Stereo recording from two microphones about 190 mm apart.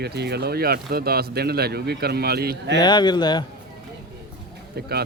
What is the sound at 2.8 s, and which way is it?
Speech, 20° left (ahead or behind).